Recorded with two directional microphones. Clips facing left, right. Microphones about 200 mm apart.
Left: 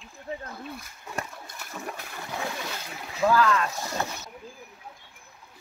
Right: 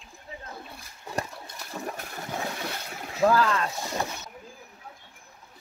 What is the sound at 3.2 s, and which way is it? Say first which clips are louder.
Speech: even; 30° right (ahead or behind).